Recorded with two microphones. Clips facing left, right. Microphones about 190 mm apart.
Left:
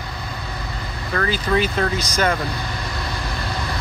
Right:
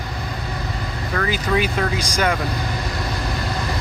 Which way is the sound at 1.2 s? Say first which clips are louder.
Left 1 dB; 10° right (ahead or behind).